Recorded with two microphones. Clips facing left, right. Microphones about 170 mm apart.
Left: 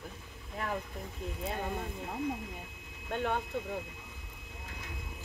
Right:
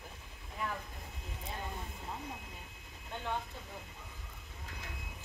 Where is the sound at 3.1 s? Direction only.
65° left (ahead or behind).